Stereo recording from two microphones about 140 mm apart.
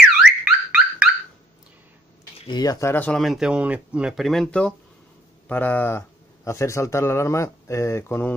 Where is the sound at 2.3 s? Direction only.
35° left (ahead or behind).